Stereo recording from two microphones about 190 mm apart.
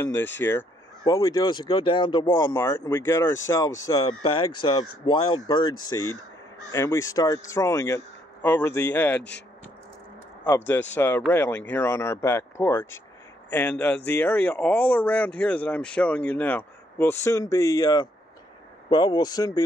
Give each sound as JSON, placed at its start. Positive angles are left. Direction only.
{"t": 0.0, "sound": "speech", "side_deg": 10}
{"t": 2.4, "sound": "speech", "side_deg": 15}
{"t": 11.0, "sound": "speech", "side_deg": 10}